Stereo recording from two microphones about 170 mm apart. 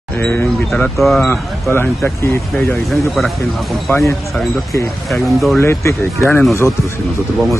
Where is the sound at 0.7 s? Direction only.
Centre (ahead or behind).